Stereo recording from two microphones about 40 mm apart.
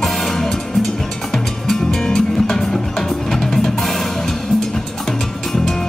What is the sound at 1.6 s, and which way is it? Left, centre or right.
Music, centre.